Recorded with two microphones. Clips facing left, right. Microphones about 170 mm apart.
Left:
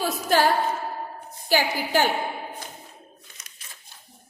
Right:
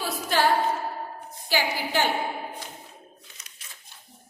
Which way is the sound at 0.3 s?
45° left (ahead or behind).